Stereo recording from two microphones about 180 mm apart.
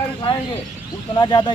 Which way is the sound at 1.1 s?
25° left (ahead or behind).